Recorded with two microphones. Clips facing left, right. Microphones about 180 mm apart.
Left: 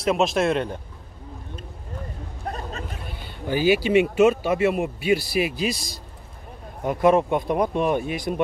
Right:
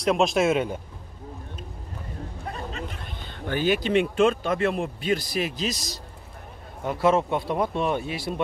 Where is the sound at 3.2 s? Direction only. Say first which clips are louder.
Left 3 dB; 10° left (ahead or behind).